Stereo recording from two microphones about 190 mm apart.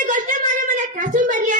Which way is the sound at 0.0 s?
45° right (ahead or behind).